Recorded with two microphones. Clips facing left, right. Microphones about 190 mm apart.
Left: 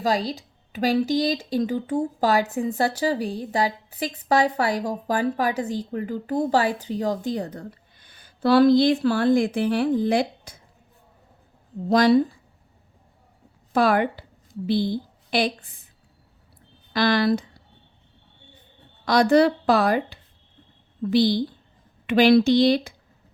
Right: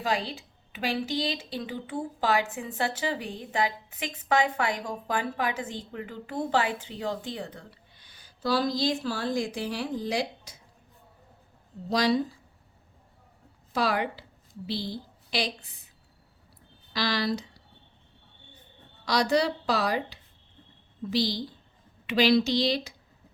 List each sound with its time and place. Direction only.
0.0 s a woman's voice: 40° left (ahead or behind); by 10.6 s 55° left (ahead or behind)
11.9 s speech: 55° left (ahead or behind)
13.7 s a woman's voice: 50° left (ahead or behind)
16.9 s a woman's voice: 55° left (ahead or behind)
19.0 s a woman's voice: 50° left (ahead or behind)